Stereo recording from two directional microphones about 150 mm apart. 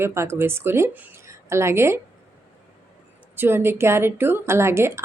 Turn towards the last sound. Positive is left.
turn(degrees=-15)  # may be behind; listen again after turning